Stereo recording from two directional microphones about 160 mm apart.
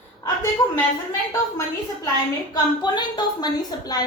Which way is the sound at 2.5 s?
25° left (ahead or behind).